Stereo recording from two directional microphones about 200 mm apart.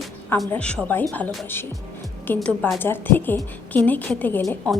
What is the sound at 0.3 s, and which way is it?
A woman's voice, 5° left (ahead or behind).